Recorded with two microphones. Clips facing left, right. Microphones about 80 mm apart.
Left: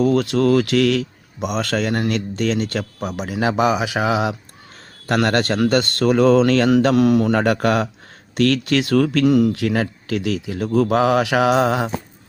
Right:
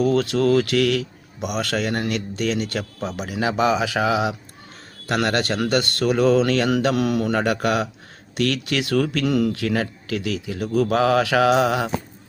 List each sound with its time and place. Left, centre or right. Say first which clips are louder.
0.0 s a man's voice: left 2 dB; left
3.0 s a man's voice: left 3 dB; left
4.0 s a man's voice: left 3 dB; left
5.5 s a man's voice: left 4 dB; left
7.3 s speech: left 3 dB; left
9.2 s a man's voice: left 5 dB; left